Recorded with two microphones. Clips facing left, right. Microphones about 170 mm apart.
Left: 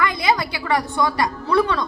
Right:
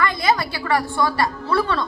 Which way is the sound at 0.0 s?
15° left (ahead or behind).